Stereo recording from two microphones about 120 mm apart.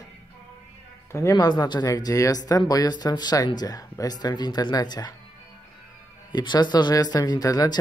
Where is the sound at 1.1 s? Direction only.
30° left (ahead or behind).